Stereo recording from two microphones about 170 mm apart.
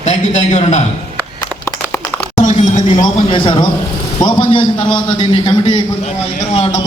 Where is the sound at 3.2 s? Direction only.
30° left (ahead or behind).